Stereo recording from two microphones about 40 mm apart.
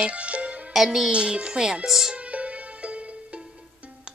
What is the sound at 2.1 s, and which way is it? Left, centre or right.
Music, right.